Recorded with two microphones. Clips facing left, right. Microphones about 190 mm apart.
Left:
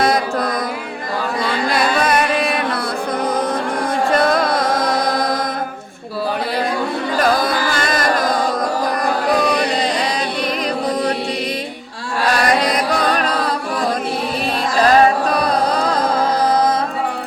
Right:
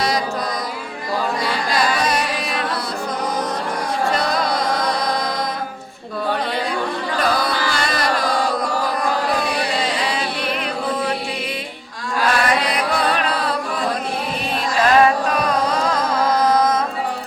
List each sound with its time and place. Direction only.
0.0 s mantra: 55° left (ahead or behind)
1.7 s music: 55° left (ahead or behind)
4.1 s music: 50° left (ahead or behind)
7.2 s music: 45° left (ahead or behind)
12.5 s music: 40° left (ahead or behind)
14.8 s music: 35° left (ahead or behind)